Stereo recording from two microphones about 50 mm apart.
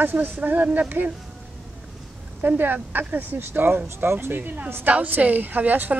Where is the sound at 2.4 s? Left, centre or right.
Right.